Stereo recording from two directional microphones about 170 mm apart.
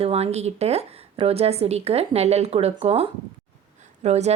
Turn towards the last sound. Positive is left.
turn(degrees=-40)  # may be behind; listen again after turning